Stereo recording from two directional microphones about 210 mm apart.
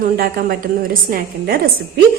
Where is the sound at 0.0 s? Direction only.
45° right (ahead or behind).